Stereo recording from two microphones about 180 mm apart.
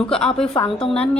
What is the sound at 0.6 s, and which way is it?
Speech, 30° left (ahead or behind).